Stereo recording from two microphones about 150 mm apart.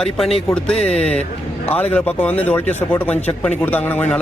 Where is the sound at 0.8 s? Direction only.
45° left (ahead or behind).